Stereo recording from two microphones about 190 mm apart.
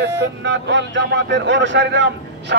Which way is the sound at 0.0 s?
70° right (ahead or behind).